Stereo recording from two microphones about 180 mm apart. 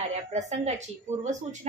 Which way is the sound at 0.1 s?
40° right (ahead or behind).